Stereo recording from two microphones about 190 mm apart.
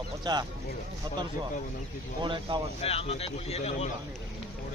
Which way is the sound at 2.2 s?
25° right (ahead or behind).